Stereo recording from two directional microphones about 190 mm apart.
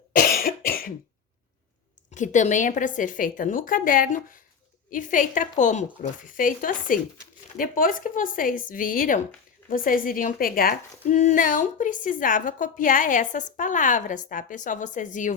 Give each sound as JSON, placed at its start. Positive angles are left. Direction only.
{"t": 0.2, "sound": "cough", "side_deg": 50}
{"t": 2.0, "sound": "a woman's voice", "side_deg": 40}